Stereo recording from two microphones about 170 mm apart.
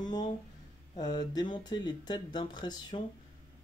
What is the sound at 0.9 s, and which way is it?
Speech, 25° left (ahead or behind).